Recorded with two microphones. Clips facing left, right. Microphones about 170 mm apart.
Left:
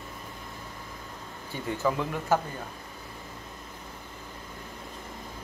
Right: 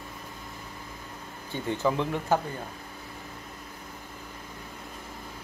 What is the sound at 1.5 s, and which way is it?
Speech, 20° right (ahead or behind).